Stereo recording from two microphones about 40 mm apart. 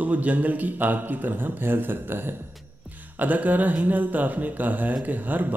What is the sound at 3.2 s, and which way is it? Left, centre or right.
A man's voice, right.